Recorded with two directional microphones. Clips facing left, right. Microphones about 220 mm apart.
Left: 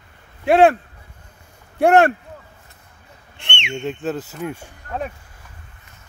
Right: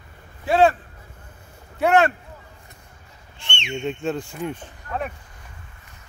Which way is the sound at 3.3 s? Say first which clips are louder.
Left 2 dB; 60° left (ahead or behind).